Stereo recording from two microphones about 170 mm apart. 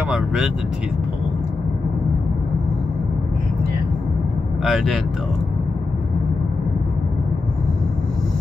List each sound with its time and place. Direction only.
0.1 s vehicle: 5° right (ahead or behind)
4.6 s speech: centre (ahead or behind)